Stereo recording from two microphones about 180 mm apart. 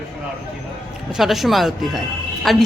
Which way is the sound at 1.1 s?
Centre (ahead or behind).